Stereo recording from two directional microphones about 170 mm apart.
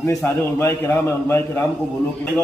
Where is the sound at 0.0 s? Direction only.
10° left (ahead or behind).